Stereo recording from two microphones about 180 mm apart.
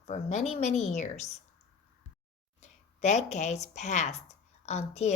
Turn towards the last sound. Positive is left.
turn(degrees=40)  # may be behind; listen again after turning